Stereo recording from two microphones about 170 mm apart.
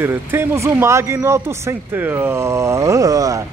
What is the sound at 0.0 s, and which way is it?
Speech, 15° right (ahead or behind).